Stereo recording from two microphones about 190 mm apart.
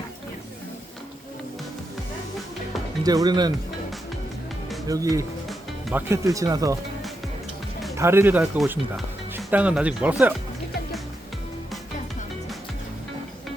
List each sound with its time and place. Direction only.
3.0 s speech: 20° right (ahead or behind)
4.9 s speech: 15° right (ahead or behind)
7.9 s speech: 15° right (ahead or behind)